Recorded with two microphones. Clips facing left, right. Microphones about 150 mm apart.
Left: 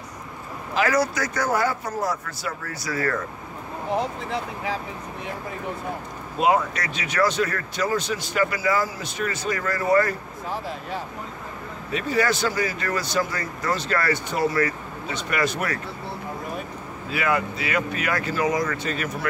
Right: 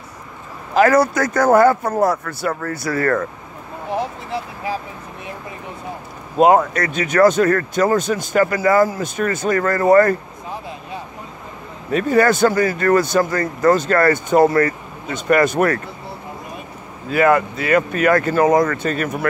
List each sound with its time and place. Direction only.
0.7 s speech: 50° right (ahead or behind)
6.3 s speech: 45° right (ahead or behind)
11.9 s speech: 50° right (ahead or behind)
17.1 s speech: 50° right (ahead or behind)